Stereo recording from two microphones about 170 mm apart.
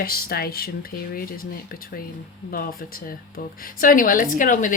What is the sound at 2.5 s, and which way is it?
A woman's voice, 60° left (ahead or behind).